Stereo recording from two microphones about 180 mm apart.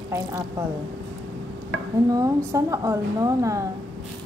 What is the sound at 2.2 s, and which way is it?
A woman's voice, 15° right (ahead or behind).